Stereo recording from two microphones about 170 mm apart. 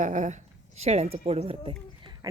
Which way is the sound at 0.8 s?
40° right (ahead or behind).